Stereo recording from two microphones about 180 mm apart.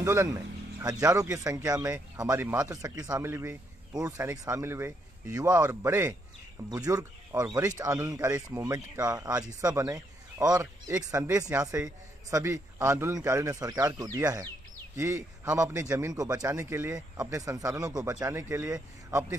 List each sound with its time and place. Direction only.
0.0 s speech: 15° right (ahead or behind)